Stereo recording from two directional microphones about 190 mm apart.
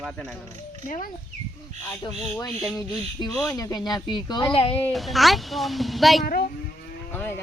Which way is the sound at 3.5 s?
20° left (ahead or behind).